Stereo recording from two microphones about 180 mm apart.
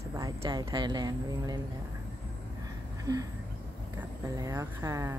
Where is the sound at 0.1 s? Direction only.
20° right (ahead or behind).